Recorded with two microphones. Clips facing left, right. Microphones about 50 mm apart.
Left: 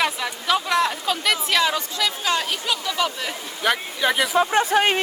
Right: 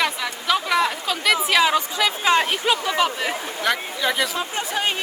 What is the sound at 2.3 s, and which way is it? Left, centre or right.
Speech, right.